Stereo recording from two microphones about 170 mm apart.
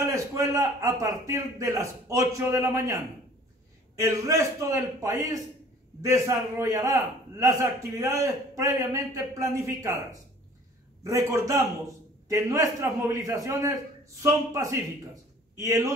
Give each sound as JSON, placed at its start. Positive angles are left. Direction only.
{"t": 0.0, "sound": "a man's voice", "side_deg": -20}
{"t": 11.1, "sound": "a man's voice", "side_deg": -20}